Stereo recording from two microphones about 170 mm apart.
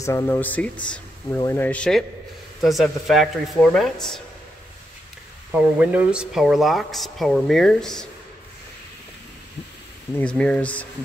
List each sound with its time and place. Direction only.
0.0 s speech: 15° left (ahead or behind)
5.5 s speech: 10° right (ahead or behind)
10.1 s speech: 5° left (ahead or behind)